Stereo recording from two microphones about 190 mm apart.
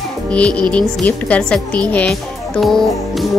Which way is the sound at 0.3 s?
5° left (ahead or behind).